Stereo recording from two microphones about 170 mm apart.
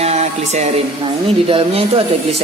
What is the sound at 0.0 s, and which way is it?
Music, 40° right (ahead or behind).